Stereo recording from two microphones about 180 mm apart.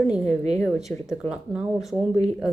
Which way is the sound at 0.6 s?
Centre (ahead or behind).